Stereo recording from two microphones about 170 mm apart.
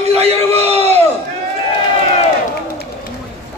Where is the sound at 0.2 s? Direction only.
35° right (ahead or behind).